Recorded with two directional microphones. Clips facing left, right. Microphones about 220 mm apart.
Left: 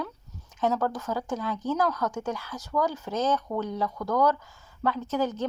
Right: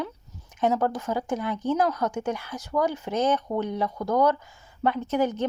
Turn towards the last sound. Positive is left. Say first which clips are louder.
# right 3 dB
turn(degrees=-15)  # may be behind; listen again after turning